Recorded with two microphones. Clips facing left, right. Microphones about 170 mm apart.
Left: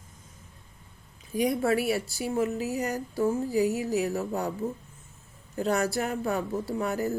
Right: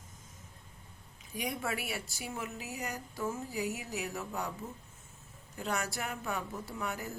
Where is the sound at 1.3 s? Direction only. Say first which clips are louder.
Left 12 dB; 35° left (ahead or behind).